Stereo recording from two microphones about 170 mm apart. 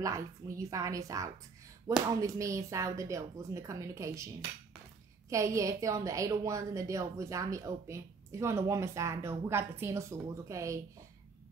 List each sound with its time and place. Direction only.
0.0 s speech: 20° right (ahead or behind)
5.3 s a woman's voice: 20° right (ahead or behind)